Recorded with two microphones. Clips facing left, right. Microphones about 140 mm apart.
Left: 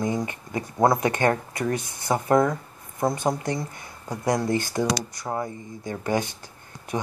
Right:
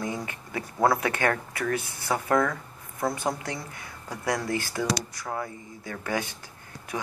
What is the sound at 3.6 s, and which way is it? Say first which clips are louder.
Speech: left 6 dB; 15° left (ahead or behind).